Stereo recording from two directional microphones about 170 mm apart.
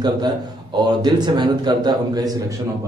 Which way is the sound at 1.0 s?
25° right (ahead or behind).